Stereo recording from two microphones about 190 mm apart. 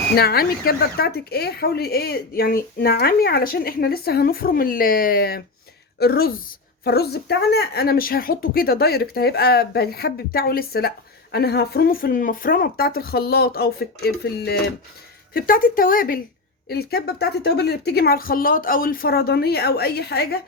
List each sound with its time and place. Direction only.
0.2 s a woman's voice: 55° left (ahead or behind)